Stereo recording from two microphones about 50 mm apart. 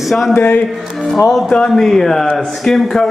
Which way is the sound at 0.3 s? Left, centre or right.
Left.